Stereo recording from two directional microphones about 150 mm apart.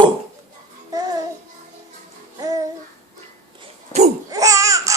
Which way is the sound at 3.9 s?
25° left (ahead or behind).